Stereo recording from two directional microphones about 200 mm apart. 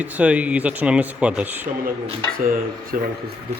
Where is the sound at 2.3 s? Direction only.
45° right (ahead or behind).